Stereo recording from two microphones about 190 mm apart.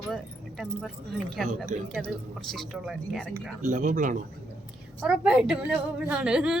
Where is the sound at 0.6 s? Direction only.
Centre (ahead or behind).